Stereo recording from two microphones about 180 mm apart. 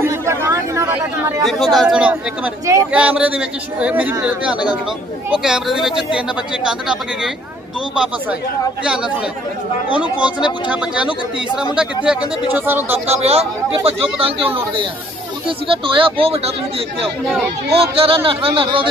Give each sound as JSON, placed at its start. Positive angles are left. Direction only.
{"t": 0.0, "sound": "chatter", "side_deg": -15}
{"t": 1.4, "sound": "a man's voice", "side_deg": 0}
{"t": 9.8, "sound": "a man's voice", "side_deg": -5}
{"t": 13.0, "sound": "speech", "side_deg": -35}
{"t": 17.9, "sound": "speech", "side_deg": -30}